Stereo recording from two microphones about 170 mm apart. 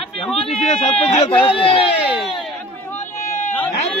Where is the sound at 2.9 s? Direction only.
45° left (ahead or behind).